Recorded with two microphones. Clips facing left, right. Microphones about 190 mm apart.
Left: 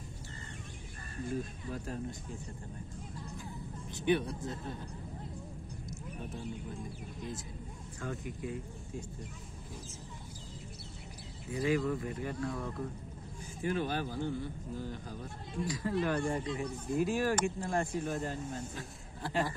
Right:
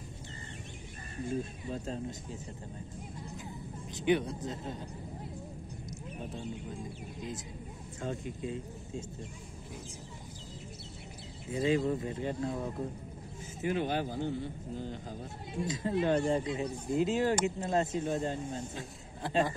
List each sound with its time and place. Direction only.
1.3 s speech: 20° right (ahead or behind)
3.4 s speech: 20° right (ahead or behind)
6.0 s speech: 20° right (ahead or behind)
11.5 s speech: 25° right (ahead or behind)